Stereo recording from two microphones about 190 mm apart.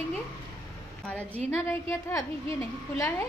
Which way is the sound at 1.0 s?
5° left (ahead or behind).